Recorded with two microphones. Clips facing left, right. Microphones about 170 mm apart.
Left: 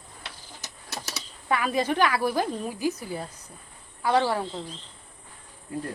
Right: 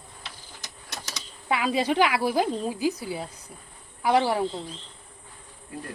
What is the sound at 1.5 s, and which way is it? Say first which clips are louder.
Speech: right 1 dB; 10° right (ahead or behind).